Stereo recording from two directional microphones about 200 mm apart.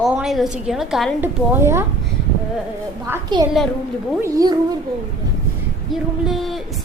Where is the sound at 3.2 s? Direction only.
20° right (ahead or behind).